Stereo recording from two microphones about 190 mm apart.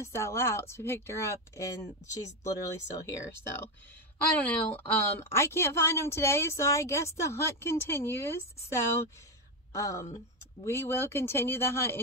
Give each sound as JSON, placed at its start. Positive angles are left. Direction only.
{"t": 0.0, "sound": "a woman's voice", "side_deg": 15}
{"t": 4.5, "sound": "a woman's voice", "side_deg": 10}